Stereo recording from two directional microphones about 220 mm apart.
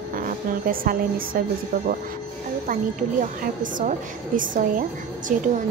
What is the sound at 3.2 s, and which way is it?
A child's voice, 35° right (ahead or behind).